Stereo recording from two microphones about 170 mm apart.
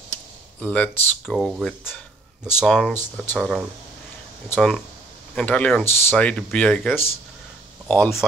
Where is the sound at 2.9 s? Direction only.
10° left (ahead or behind).